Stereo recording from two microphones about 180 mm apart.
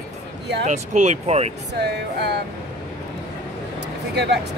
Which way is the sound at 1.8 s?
70° right (ahead or behind).